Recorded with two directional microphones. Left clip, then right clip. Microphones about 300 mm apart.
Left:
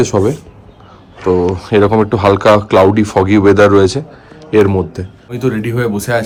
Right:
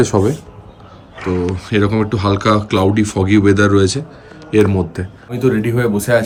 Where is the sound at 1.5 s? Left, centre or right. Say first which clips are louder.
Left 6 dB; centre.